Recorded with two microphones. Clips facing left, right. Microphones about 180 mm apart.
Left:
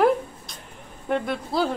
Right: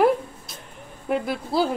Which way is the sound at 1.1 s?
5° right (ahead or behind).